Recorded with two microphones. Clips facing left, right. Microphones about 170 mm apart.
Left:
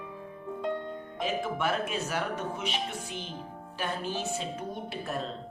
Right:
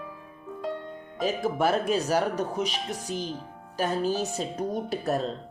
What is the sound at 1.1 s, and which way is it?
Speech, 40° right (ahead or behind).